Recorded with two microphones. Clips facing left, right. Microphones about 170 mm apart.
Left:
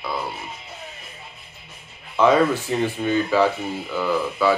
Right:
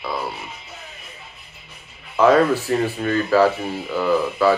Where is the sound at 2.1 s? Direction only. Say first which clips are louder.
Right 2 dB; 5° right (ahead or behind).